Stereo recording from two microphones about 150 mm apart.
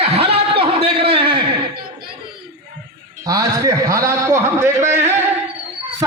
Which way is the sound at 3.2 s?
25° right (ahead or behind).